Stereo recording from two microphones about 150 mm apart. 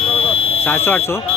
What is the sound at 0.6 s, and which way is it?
Speech, 15° left (ahead or behind).